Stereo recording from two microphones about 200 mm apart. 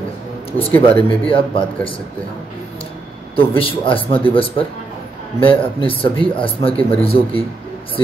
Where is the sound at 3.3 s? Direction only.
25° left (ahead or behind).